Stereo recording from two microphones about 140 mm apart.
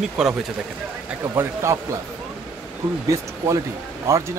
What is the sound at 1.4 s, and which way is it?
Speech, 20° right (ahead or behind).